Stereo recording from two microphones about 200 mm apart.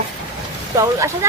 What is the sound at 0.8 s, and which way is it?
Speech, 15° right (ahead or behind).